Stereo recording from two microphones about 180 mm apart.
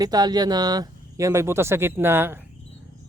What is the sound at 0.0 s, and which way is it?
Speech, 20° right (ahead or behind).